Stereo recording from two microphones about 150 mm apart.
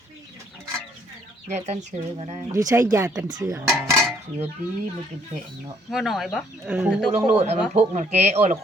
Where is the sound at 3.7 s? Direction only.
Centre (ahead or behind).